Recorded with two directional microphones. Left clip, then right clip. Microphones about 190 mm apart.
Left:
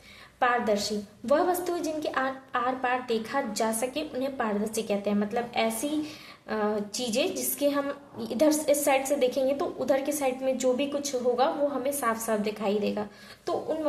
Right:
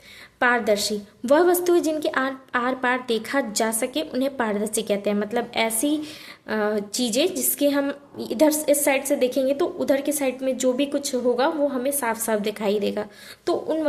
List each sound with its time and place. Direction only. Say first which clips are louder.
0.3 s a woman's voice: right 5 dB; 40° right (ahead or behind)